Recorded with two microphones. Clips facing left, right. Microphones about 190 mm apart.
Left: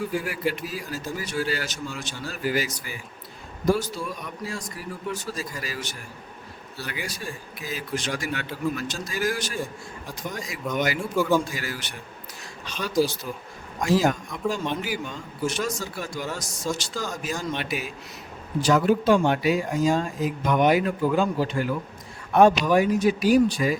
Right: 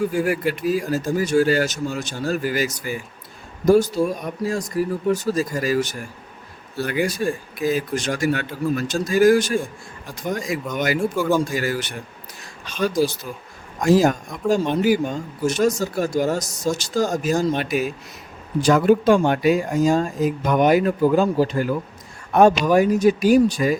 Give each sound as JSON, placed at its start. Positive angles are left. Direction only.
{"t": 0.1, "sound": "speech", "side_deg": -50}
{"t": 13.8, "sound": "speech", "side_deg": -45}